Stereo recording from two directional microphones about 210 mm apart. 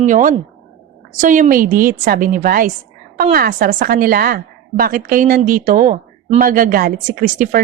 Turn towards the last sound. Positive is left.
turn(degrees=-40)  # may be behind; listen again after turning